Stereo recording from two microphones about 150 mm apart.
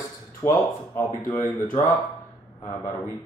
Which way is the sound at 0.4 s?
20° left (ahead or behind).